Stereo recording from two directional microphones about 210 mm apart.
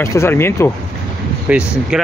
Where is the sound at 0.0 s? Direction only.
15° left (ahead or behind).